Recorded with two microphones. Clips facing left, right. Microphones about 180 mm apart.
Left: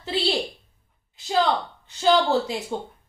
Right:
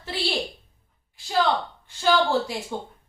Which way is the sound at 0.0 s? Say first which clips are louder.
Left 3 dB; 20° left (ahead or behind).